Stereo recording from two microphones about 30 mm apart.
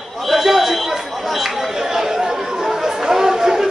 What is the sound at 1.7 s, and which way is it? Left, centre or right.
Chatter, centre.